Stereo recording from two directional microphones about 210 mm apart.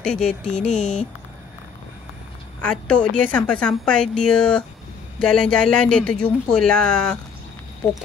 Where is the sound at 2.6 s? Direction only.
5° left (ahead or behind).